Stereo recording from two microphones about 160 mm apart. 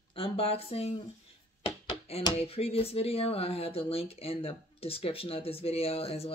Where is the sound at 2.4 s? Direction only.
40° left (ahead or behind).